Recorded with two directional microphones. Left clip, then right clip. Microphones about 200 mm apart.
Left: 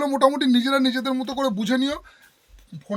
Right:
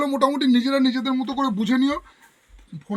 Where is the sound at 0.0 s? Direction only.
55° left (ahead or behind).